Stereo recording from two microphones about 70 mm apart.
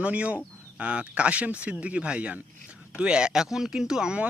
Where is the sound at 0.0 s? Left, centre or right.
Centre.